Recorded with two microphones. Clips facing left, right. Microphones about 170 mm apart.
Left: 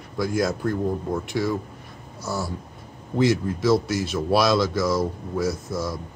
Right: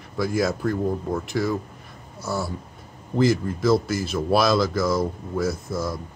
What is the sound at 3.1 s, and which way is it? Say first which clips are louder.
Speech: even; centre (ahead or behind).